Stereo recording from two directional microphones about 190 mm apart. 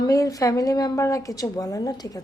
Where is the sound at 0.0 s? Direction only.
20° left (ahead or behind).